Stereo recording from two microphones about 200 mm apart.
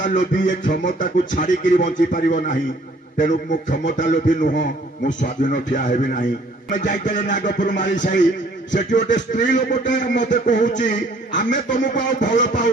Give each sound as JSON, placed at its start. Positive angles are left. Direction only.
{"t": 0.1, "sound": "a man's voice", "side_deg": 40}